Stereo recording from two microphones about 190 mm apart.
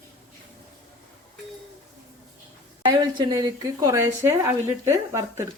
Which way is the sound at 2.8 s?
20° right (ahead or behind).